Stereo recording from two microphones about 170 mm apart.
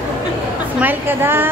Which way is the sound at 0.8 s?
10° right (ahead or behind).